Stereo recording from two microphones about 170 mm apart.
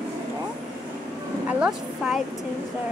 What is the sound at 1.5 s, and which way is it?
Speech, 5° right (ahead or behind).